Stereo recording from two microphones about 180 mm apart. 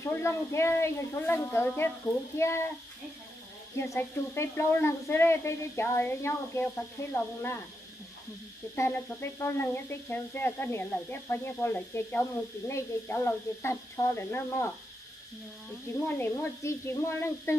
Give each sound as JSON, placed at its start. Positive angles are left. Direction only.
{"t": 0.0, "sound": "speech", "side_deg": 15}
{"t": 3.7, "sound": "speech", "side_deg": 15}
{"t": 9.4, "sound": "speech", "side_deg": 15}
{"t": 15.9, "sound": "speech", "side_deg": 10}